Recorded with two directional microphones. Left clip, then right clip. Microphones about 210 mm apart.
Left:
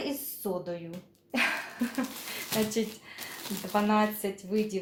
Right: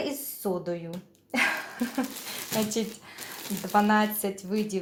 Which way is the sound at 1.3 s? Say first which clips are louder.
Right 3 dB; 30° right (ahead or behind).